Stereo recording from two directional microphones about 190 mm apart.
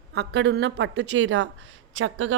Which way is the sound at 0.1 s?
60° right (ahead or behind).